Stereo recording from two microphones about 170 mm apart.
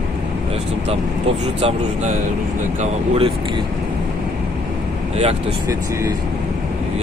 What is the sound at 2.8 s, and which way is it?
Speech, 35° right (ahead or behind).